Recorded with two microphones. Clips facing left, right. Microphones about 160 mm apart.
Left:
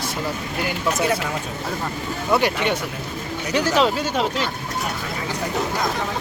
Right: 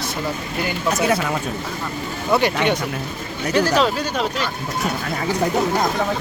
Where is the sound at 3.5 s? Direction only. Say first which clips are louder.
Right 1 dB; 20° left (ahead or behind).